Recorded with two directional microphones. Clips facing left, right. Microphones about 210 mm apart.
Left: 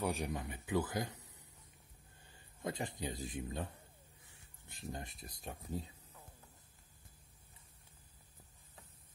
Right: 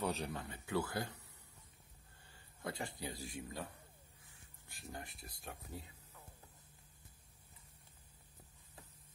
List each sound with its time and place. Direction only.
0.0 s speech: 10° left (ahead or behind)
2.3 s speech: 20° left (ahead or behind)
4.6 s speech: 20° left (ahead or behind)